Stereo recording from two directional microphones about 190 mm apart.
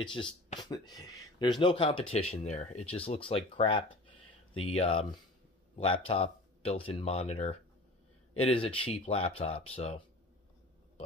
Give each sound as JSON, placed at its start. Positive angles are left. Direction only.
{"t": 0.0, "sound": "speech", "side_deg": 25}